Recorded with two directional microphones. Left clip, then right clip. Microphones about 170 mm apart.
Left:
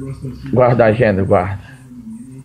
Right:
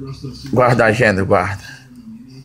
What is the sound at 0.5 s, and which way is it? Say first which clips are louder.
Speech: left 1 dB; 15° right (ahead or behind).